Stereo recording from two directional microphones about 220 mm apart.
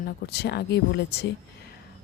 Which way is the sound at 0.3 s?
45° left (ahead or behind).